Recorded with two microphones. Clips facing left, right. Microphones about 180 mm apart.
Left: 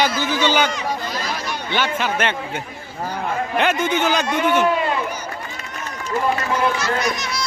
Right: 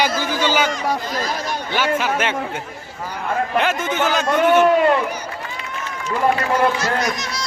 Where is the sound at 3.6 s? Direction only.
Centre (ahead or behind).